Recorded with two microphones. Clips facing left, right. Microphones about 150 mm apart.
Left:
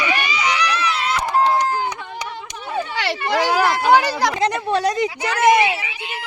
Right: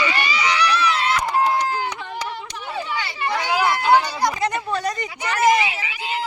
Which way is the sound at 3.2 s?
90° left.